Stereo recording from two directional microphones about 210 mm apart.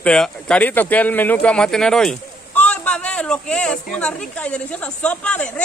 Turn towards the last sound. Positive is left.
turn(degrees=5)  # may be behind; listen again after turning